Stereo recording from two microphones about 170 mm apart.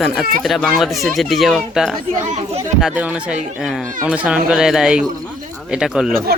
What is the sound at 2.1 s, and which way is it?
Speech, 45° right (ahead or behind).